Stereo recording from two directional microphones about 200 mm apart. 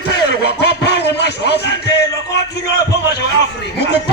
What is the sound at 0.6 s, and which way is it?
Music, 60° left (ahead or behind).